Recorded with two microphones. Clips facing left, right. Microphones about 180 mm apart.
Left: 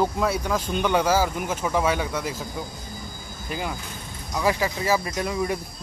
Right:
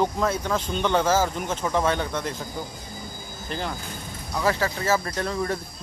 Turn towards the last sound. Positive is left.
turn(degrees=10)  # may be behind; listen again after turning